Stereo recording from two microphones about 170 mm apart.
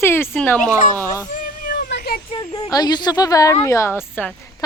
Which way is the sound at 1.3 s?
60° left (ahead or behind).